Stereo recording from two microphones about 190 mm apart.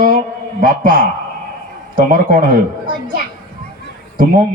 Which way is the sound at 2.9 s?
25° right (ahead or behind).